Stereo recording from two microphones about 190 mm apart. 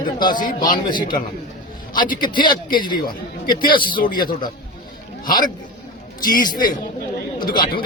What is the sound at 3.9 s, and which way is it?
Speech, 50° left (ahead or behind).